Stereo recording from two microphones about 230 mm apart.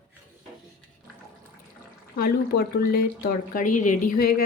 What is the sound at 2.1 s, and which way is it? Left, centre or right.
Speech, left.